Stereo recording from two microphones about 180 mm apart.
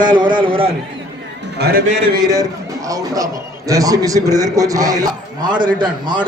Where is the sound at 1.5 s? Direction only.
65° right (ahead or behind).